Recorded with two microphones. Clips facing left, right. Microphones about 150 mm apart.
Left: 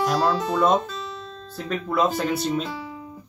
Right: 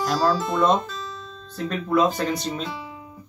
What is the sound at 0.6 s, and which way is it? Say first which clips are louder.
A man's voice: left 2 dB; 5° left (ahead or behind).